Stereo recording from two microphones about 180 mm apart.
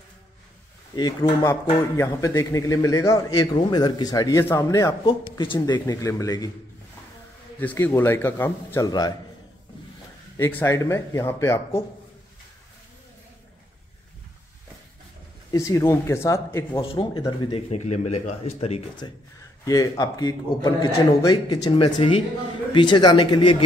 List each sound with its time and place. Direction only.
0.9 s a man's voice: 25° left (ahead or behind)
5.0 s a man's voice: 25° left (ahead or behind)
7.6 s a man's voice: 10° left (ahead or behind)
10.3 s a man's voice: 15° left (ahead or behind)
15.5 s a man's voice: 15° left (ahead or behind)
16.9 s a man's voice: 25° left (ahead or behind)
17.6 s a man's voice: 40° left (ahead or behind)
19.0 s a man's voice: 25° left (ahead or behind)